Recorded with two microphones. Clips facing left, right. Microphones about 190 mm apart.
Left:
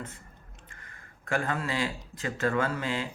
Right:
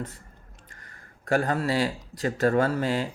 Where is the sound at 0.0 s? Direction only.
40° right (ahead or behind).